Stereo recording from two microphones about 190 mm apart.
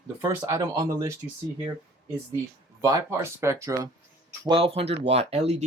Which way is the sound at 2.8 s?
15° right (ahead or behind).